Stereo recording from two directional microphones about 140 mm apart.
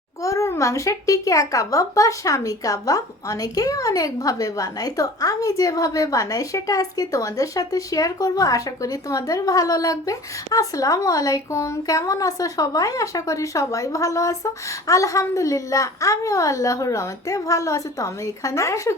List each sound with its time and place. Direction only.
0.2 s a child's voice: 20° left (ahead or behind)